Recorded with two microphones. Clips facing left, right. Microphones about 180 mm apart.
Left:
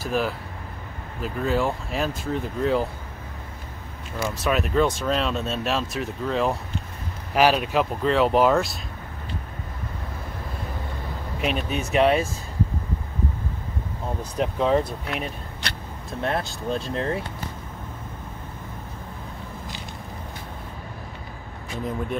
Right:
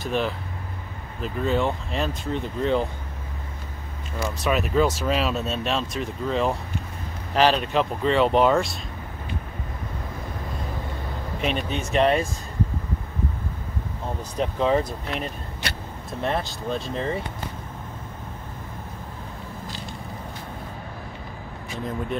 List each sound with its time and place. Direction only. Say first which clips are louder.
0.0 s speech: even; 5° left (ahead or behind)
4.4 s speech: even; centre (ahead or behind)
11.4 s speech: left 1 dB; 5° left (ahead or behind)
14.4 s speech: even; centre (ahead or behind)